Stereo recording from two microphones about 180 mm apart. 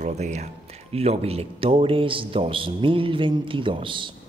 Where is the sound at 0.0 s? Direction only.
40° right (ahead or behind).